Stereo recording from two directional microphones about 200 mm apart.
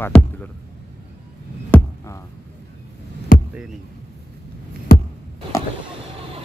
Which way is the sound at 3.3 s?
45° left (ahead or behind).